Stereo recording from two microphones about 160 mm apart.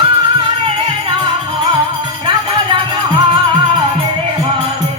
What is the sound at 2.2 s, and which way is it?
Music, 30° right (ahead or behind).